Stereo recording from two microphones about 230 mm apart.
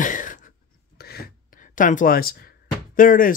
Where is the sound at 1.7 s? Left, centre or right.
Left.